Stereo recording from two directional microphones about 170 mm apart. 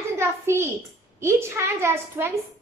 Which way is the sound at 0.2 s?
15° right (ahead or behind).